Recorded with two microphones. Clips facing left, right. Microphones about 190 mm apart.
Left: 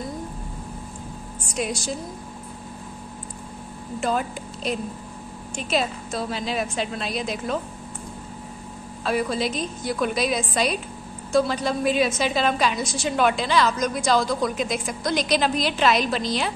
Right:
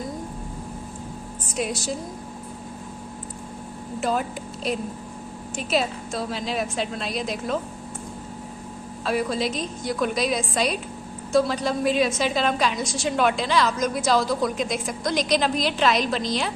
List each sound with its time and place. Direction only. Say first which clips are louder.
1.5 s a woman's voice: even; centre (ahead or behind)
4.0 s a woman's voice: even; centre (ahead or behind)
9.0 s a woman's voice: even; centre (ahead or behind)